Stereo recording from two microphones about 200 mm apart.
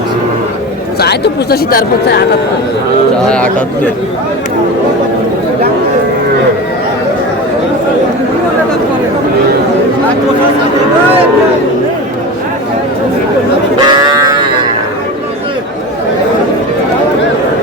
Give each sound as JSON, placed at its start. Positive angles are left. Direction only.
{"t": 0.9, "sound": "speech", "side_deg": 55}
{"t": 3.2, "sound": "speech", "side_deg": 5}
{"t": 13.8, "sound": "cattle", "side_deg": -20}